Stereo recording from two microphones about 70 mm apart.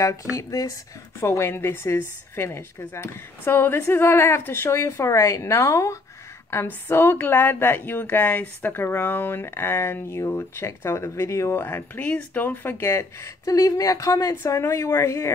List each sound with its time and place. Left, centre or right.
0.0 s speech: left
1.2 s speech: left
6.5 s speech: left
11.6 s speech: left
12.8 s speech: left
14.4 s speech: left